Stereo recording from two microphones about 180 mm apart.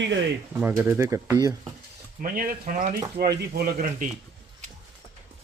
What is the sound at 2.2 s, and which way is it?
Speech, 50° right (ahead or behind).